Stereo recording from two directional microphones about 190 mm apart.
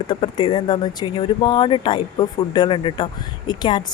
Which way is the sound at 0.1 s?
25° left (ahead or behind).